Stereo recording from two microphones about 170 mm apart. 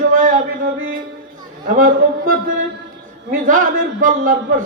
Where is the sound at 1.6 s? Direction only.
55° right (ahead or behind).